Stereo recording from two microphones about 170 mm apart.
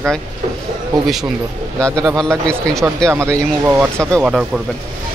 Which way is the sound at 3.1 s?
15° right (ahead or behind).